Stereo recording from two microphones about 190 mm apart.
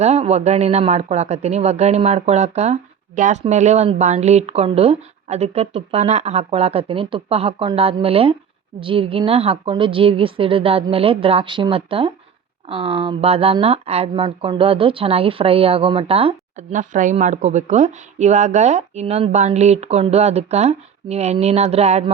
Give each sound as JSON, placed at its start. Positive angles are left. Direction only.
{"t": 0.0, "sound": "a woman's voice", "side_deg": -35}